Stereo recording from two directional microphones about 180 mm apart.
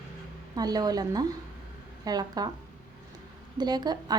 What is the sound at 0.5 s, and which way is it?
Speech, 20° right (ahead or behind).